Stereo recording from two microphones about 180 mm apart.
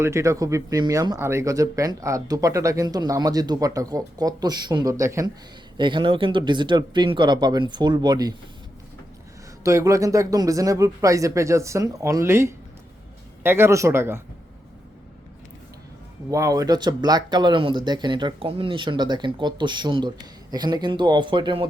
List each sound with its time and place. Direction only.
0.0 s speech: 15° right (ahead or behind)
9.6 s speech: 15° right (ahead or behind)
16.3 s speech: 20° right (ahead or behind)